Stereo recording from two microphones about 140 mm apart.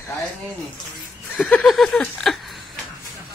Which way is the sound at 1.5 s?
Centre (ahead or behind).